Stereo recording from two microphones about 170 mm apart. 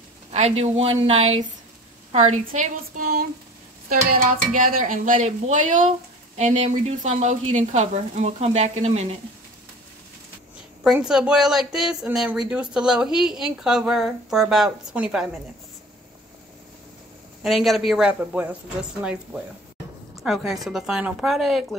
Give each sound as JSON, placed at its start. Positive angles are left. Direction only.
{"t": 0.3, "sound": "speech", "side_deg": -40}
{"t": 4.6, "sound": "speech", "side_deg": -50}
{"t": 10.8, "sound": "speech", "side_deg": -5}
{"t": 17.4, "sound": "speech", "side_deg": 0}